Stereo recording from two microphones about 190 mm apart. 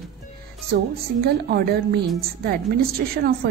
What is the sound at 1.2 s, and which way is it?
Speech, 55° right (ahead or behind).